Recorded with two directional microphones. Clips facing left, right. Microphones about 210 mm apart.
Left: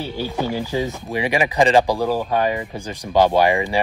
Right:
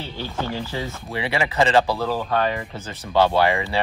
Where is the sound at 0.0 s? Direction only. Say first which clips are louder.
Left 5 dB; 10° left (ahead or behind).